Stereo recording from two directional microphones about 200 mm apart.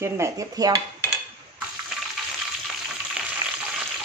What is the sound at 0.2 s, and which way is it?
Speech, 20° right (ahead or behind).